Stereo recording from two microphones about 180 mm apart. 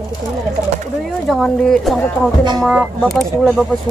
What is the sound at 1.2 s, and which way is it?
Speech, centre (ahead or behind).